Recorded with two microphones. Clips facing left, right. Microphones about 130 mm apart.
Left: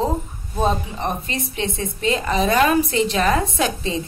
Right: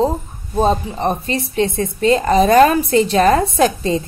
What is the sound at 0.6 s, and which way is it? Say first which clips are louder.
A woman's voice: right 5 dB; 35° right (ahead or behind).